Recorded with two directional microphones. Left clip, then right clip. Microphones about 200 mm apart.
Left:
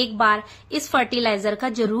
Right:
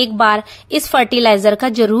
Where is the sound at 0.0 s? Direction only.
45° right (ahead or behind).